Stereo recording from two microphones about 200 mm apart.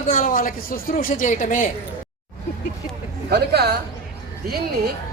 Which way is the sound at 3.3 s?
55° right (ahead or behind).